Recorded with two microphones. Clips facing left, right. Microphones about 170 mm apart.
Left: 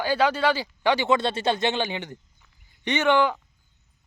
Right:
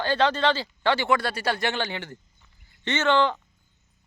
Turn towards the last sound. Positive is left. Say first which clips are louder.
# left 1 dB
turn(degrees=10)  # may be behind; listen again after turning